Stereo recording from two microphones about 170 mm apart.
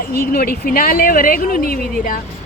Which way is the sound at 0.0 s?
60° left (ahead or behind).